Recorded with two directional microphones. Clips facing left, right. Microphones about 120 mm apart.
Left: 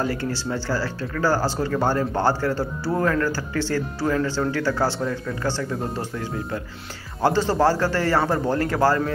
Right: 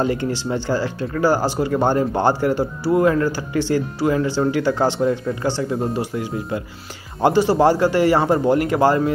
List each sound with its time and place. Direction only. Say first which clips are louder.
0.0 s speech: right 4 dB; 20° right (ahead or behind)